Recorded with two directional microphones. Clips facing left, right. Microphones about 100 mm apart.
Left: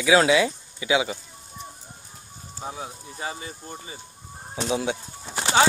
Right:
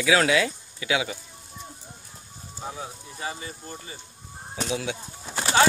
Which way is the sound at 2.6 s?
25° left (ahead or behind).